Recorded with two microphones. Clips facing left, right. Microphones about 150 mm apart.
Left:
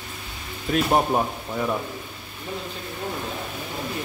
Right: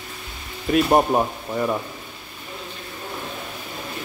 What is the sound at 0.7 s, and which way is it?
Speech, 10° right (ahead or behind).